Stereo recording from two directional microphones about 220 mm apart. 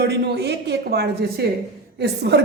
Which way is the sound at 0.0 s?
50° right (ahead or behind).